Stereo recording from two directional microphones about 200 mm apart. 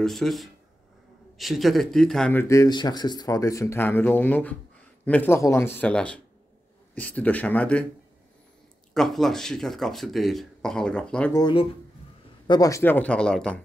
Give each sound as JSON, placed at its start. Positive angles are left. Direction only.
{"t": 0.0, "sound": "speech", "side_deg": 0}
{"t": 8.9, "sound": "speech", "side_deg": 0}
{"t": 11.3, "sound": "speech", "side_deg": 20}